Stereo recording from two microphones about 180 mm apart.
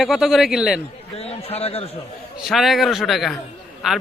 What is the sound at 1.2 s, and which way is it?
Speech, 35° left (ahead or behind).